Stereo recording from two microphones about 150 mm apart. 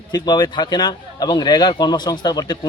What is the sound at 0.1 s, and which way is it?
A man's voice, 30° left (ahead or behind).